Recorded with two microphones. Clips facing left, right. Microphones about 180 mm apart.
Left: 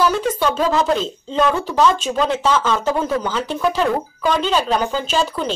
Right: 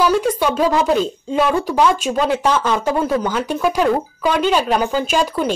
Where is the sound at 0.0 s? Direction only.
10° right (ahead or behind).